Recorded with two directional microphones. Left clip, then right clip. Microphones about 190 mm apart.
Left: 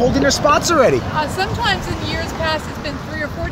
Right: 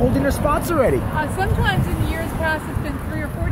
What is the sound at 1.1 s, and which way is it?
Speech, 50° left (ahead or behind).